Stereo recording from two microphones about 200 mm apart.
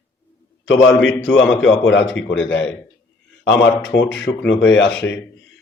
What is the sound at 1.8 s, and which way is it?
Speech, 65° left (ahead or behind).